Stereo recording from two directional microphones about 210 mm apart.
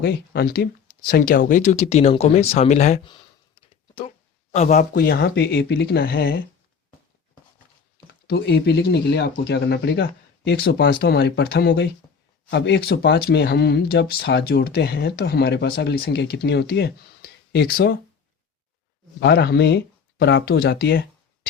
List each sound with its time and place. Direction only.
0.0 s speech: 50° left (ahead or behind); by 3.1 s 30° left (ahead or behind)
4.5 s speech: 35° left (ahead or behind)
8.3 s speech: 50° left (ahead or behind)
19.2 s speech: 50° left (ahead or behind)